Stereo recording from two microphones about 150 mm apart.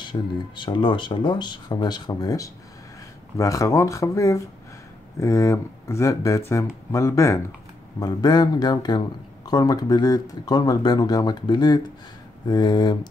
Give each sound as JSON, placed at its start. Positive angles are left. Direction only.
{"t": 0.0, "sound": "speech", "side_deg": 30}